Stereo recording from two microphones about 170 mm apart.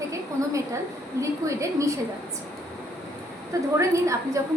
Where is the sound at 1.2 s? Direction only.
20° right (ahead or behind).